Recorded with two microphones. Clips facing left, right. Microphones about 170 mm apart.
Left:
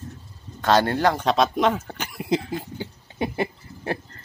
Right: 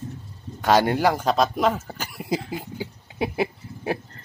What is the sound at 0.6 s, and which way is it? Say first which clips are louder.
Speech: right 1 dB; 10° right (ahead or behind).